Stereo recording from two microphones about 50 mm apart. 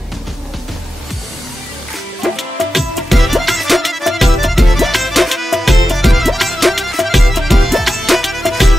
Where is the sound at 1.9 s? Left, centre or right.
Centre.